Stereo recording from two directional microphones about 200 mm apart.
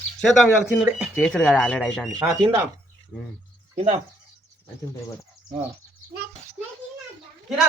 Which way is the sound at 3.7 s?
30° right (ahead or behind).